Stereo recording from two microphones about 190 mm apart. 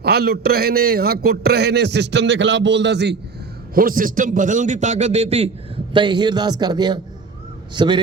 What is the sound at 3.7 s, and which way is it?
A man's voice, 45° right (ahead or behind).